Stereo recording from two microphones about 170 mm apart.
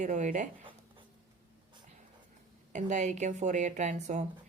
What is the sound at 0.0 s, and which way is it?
Speech, 50° right (ahead or behind).